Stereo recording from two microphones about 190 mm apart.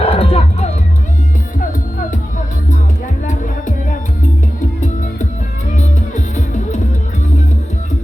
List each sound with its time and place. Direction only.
0.0 s music: 30° left (ahead or behind)
5.7 s music: 40° left (ahead or behind)